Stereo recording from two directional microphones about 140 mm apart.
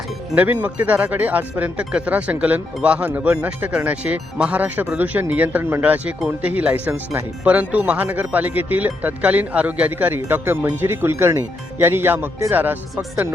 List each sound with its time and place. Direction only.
0.3 s speech: 10° right (ahead or behind)